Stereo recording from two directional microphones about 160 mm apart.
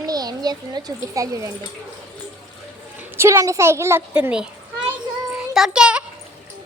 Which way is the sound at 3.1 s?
15° right (ahead or behind).